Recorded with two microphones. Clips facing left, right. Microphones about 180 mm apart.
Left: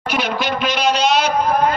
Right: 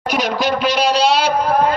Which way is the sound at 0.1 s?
35° right (ahead or behind).